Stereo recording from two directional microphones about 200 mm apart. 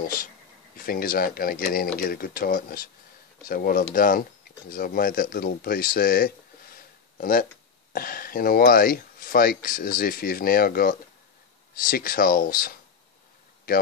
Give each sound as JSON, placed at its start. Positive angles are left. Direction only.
{"t": 0.0, "sound": "speech", "side_deg": 45}